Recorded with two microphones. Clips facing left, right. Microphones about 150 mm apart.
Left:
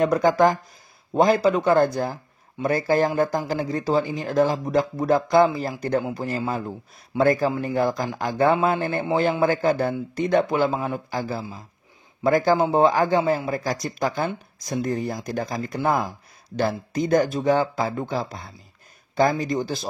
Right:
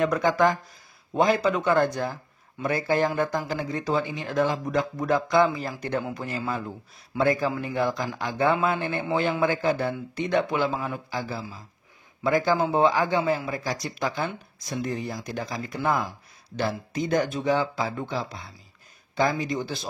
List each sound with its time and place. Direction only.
0.0 s speech: 40° left (ahead or behind)